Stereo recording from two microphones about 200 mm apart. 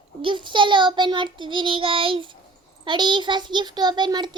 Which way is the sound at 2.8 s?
20° right (ahead or behind).